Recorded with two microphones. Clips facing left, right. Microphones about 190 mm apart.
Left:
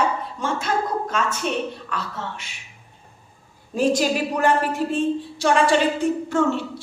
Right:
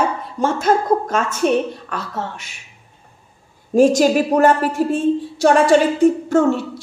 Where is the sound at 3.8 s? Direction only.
45° right (ahead or behind).